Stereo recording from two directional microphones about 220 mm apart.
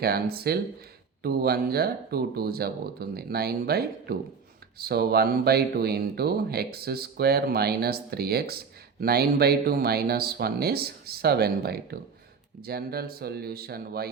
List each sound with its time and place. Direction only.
0.0 s speech: 45° right (ahead or behind)